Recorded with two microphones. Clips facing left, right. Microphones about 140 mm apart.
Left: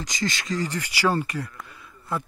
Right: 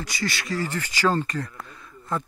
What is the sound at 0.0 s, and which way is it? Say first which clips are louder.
Speech: left 1 dB; 20° left (ahead or behind).